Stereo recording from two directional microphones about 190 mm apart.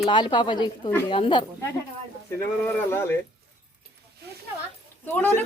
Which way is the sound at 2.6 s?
10° left (ahead or behind).